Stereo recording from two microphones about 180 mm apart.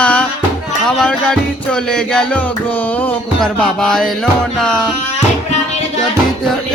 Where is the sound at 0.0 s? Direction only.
5° left (ahead or behind).